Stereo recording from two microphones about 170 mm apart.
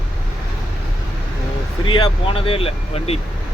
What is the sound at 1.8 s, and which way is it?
Speech, 30° left (ahead or behind).